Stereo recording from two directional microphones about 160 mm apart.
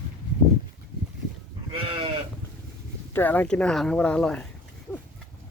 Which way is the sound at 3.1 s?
10° left (ahead or behind).